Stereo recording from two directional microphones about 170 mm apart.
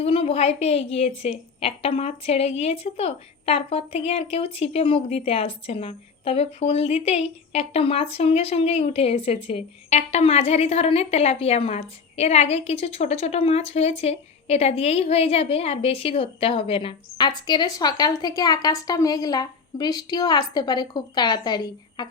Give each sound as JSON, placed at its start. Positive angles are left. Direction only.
{"t": 0.0, "sound": "a woman's voice", "side_deg": 35}